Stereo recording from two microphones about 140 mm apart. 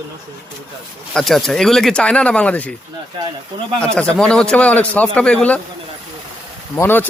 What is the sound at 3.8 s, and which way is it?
A man's voice, 5° left (ahead or behind).